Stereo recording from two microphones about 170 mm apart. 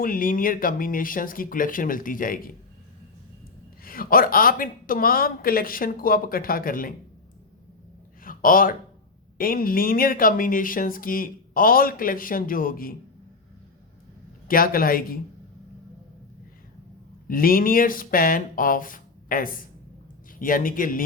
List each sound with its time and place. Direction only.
0.0 s speech: 55° left (ahead or behind)
3.8 s speech: 60° left (ahead or behind)
8.2 s a sound: 55° left (ahead or behind)
9.4 s speech: 55° left (ahead or behind)
14.4 s speech: 60° left (ahead or behind)
17.2 s speech: 55° left (ahead or behind)